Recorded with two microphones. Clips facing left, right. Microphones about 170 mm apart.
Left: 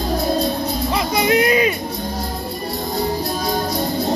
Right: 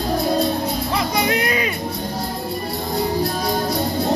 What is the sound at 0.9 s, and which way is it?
Music, 20° left (ahead or behind).